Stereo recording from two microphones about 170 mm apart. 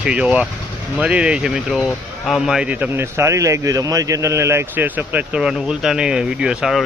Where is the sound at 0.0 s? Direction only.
5° right (ahead or behind).